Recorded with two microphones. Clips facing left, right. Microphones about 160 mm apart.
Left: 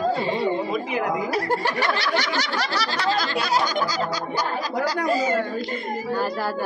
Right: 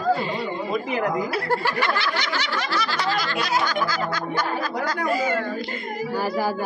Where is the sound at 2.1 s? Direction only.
40° left (ahead or behind).